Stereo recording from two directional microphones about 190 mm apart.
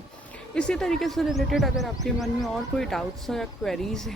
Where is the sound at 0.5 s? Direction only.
5° left (ahead or behind).